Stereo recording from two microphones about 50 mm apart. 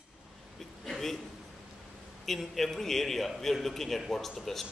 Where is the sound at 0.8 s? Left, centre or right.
Centre.